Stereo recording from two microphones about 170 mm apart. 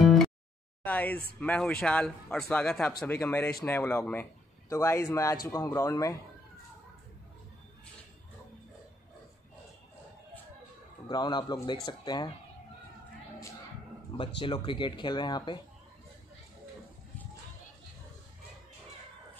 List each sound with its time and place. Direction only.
0.0 s a sound: centre (ahead or behind)
0.8 s a man's voice: 10° left (ahead or behind)
11.1 s speech: 25° left (ahead or behind)
14.4 s speech: 30° left (ahead or behind)